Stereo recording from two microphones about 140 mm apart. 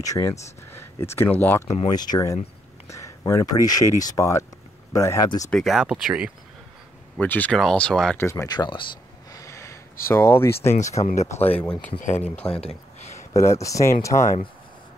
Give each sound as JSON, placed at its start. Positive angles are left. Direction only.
{"t": 0.0, "sound": "speech", "side_deg": 25}
{"t": 1.9, "sound": "speech", "side_deg": 30}
{"t": 5.5, "sound": "speech", "side_deg": 0}
{"t": 7.2, "sound": "speech", "side_deg": 10}
{"t": 8.2, "sound": "speech", "side_deg": 20}
{"t": 9.3, "sound": "a sound", "side_deg": 25}
{"t": 10.7, "sound": "speech", "side_deg": 55}
{"t": 13.3, "sound": "speech", "side_deg": 20}